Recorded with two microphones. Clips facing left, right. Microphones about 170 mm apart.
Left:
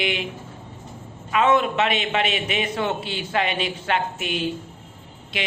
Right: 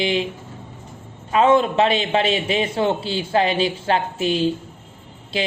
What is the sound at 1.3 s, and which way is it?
A man's voice, 30° right (ahead or behind).